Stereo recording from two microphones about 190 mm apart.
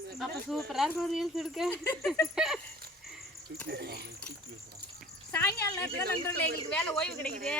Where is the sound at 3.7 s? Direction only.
55° right (ahead or behind).